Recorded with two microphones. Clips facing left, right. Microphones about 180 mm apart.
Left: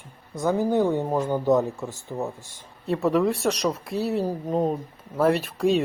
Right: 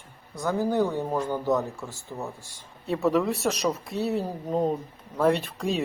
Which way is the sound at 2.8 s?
Centre (ahead or behind).